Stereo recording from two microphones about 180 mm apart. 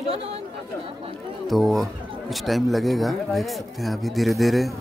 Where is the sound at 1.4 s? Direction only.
Centre (ahead or behind).